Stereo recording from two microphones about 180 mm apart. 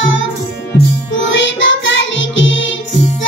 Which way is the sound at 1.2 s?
90° left.